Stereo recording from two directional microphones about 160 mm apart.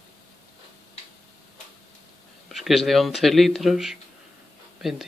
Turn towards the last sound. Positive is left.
turn(degrees=0)  # may be behind; listen again after turning